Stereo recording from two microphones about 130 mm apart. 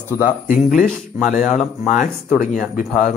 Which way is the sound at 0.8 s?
Centre (ahead or behind).